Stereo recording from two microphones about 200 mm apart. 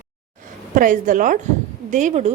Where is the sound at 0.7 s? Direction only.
40° right (ahead or behind).